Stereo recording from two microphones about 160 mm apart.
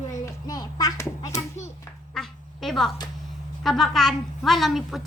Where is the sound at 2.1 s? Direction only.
Centre (ahead or behind).